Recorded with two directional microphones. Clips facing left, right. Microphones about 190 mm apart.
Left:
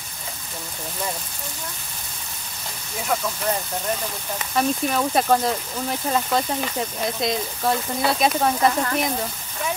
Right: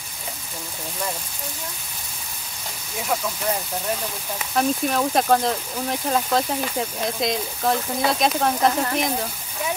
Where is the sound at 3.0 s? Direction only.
10° right (ahead or behind).